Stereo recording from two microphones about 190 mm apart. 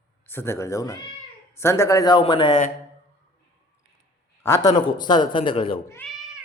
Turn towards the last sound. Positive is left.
turn(degrees=5)  # may be behind; listen again after turning